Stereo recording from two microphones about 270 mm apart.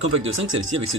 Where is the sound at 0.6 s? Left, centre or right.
Right.